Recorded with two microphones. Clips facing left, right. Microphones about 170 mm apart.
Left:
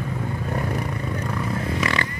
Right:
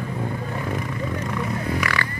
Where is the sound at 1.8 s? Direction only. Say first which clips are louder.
Left 2 dB; 25° left (ahead or behind).